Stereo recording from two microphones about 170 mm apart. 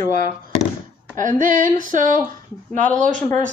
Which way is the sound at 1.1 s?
50° right (ahead or behind).